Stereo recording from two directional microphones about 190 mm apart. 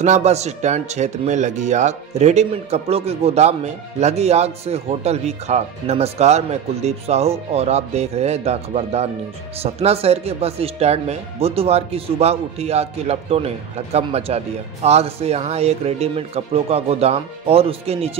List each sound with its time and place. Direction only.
0.0 s a man's voice: 35° right (ahead or behind)